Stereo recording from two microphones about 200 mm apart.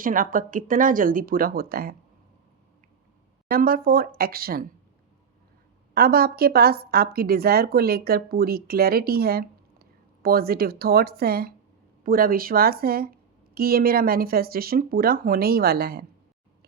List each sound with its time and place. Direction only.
0.0 s a woman's voice: 45° right (ahead or behind)
3.5 s a woman's voice: 45° right (ahead or behind)
5.9 s a woman's voice: 50° right (ahead or behind)